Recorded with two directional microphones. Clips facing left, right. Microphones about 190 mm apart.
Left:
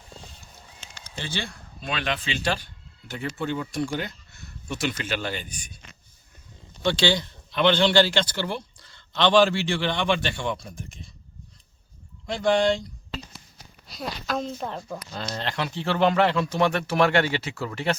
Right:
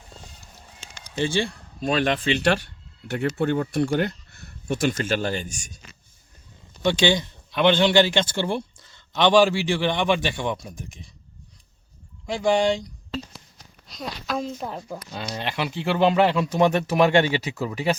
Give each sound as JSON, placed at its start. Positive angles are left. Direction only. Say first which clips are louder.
{"t": 1.5, "sound": "speech", "louder": "right 8 dB", "side_deg": -40}
{"t": 6.8, "sound": "a man's voice", "louder": "right 3 dB", "side_deg": -20}
{"t": 12.2, "sound": "speech", "louder": "right 1 dB", "side_deg": -10}
{"t": 13.1, "sound": "a sound", "louder": "right 5 dB", "side_deg": 5}
{"t": 15.4, "sound": "speech", "louder": "right 2 dB", "side_deg": -10}